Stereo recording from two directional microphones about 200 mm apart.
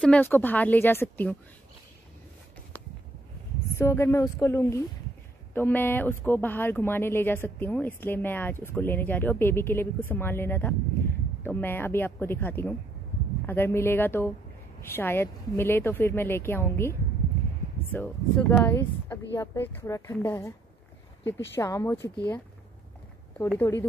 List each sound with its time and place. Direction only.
0.0 s speech: 10° left (ahead or behind)
3.7 s speech: 10° left (ahead or behind)
17.9 s speech: 10° left (ahead or behind)
21.2 s speech: 65° left (ahead or behind)
21.5 s speech: 15° left (ahead or behind)
23.6 s speech: 10° left (ahead or behind)